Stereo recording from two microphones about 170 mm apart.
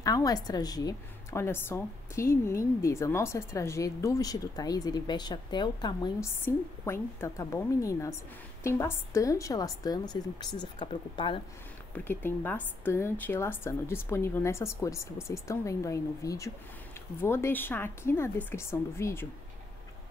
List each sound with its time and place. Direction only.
0.0 s a woman's voice: 20° left (ahead or behind)
6.4 s a woman's voice: 15° left (ahead or behind); by 11.4 s 30° left (ahead or behind)
11.9 s a woman's voice: 10° left (ahead or behind)